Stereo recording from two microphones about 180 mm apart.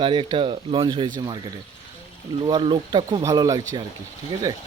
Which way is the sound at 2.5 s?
25° right (ahead or behind).